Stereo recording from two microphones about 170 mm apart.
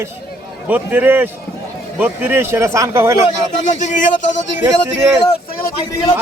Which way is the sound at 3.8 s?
45° left (ahead or behind).